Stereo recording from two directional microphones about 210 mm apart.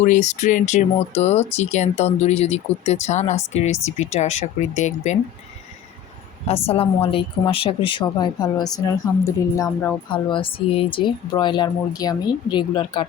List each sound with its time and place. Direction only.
0.0 s speech: 35° left (ahead or behind)
6.5 s a woman's voice: 25° left (ahead or behind)